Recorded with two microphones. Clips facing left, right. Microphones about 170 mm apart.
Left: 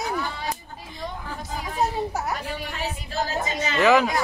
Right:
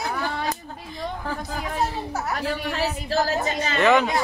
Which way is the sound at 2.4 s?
70° right (ahead or behind).